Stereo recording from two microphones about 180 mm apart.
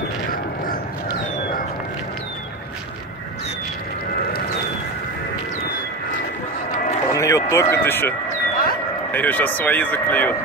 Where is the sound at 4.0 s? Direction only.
55° left (ahead or behind).